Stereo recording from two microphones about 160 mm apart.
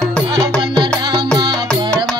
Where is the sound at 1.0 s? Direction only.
25° right (ahead or behind).